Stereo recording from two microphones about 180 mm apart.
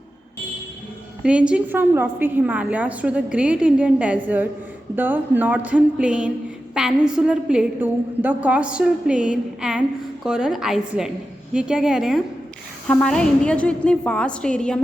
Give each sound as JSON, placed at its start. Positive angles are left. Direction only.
{"t": 1.2, "sound": "a woman's voice", "side_deg": -5}